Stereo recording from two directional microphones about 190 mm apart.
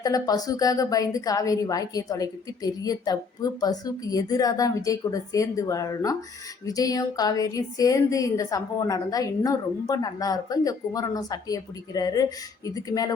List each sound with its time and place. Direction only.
0.0 s a woman's voice: 20° left (ahead or behind)